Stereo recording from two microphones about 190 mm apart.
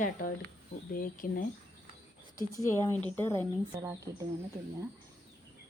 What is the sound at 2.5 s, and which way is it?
Speech, 15° left (ahead or behind).